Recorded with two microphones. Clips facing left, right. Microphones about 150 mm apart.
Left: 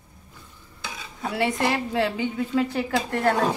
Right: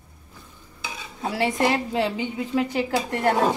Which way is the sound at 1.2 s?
25° right (ahead or behind).